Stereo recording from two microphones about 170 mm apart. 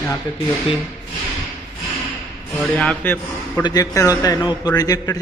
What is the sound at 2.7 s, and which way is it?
Speech, 5° left (ahead or behind).